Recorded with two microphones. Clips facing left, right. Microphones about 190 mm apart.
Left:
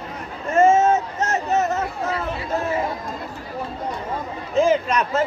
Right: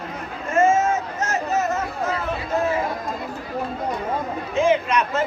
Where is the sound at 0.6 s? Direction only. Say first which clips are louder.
Left 3 dB; 35° left (ahead or behind).